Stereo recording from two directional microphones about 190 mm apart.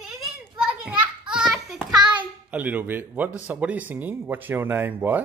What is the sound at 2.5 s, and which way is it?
Speech, 10° right (ahead or behind).